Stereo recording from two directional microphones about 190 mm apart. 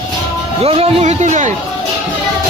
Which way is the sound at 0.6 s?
30° right (ahead or behind).